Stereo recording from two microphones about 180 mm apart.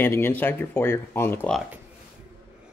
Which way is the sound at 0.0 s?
10° left (ahead or behind).